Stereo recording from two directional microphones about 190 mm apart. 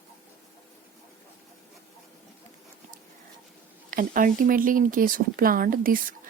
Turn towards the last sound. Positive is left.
turn(degrees=-50)  # may be behind; listen again after turning